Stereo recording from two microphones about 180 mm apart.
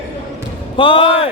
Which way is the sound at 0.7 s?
30° left (ahead or behind).